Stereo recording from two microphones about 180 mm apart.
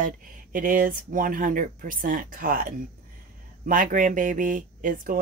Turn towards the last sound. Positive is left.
turn(degrees=-50)  # may be behind; listen again after turning